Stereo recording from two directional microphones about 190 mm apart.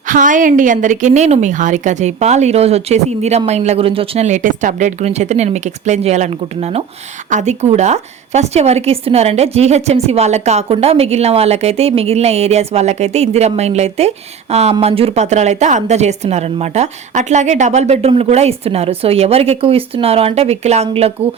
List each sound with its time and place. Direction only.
0.1 s a woman's voice: 45° right (ahead or behind)